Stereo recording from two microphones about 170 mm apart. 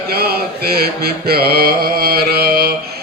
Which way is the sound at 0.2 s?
65° right (ahead or behind).